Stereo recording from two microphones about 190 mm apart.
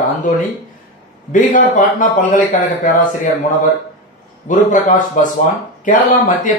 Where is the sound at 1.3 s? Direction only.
45° left (ahead or behind).